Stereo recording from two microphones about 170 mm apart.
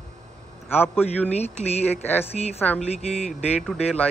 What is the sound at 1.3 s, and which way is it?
Speech, 40° left (ahead or behind).